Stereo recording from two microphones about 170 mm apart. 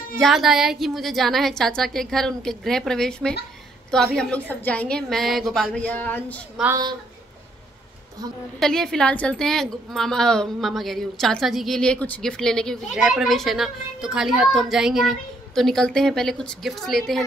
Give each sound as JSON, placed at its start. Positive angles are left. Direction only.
{"t": 0.1, "sound": "a woman's voice", "side_deg": 0}
{"t": 6.7, "sound": "a woman's voice", "side_deg": -25}
{"t": 8.5, "sound": "a woman's voice", "side_deg": 5}